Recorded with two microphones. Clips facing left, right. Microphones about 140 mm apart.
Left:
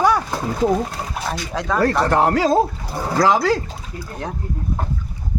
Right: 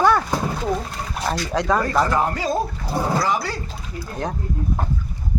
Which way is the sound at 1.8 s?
70° left (ahead or behind).